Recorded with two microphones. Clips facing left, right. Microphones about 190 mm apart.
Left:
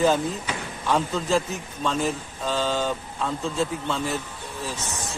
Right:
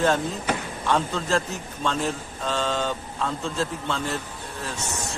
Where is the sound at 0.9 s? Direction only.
Centre (ahead or behind).